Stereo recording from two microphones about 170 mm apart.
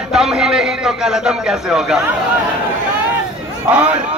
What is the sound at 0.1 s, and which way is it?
A man's voice, 5° right (ahead or behind).